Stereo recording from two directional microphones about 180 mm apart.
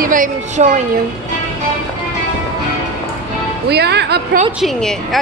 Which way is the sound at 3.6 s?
65° right (ahead or behind).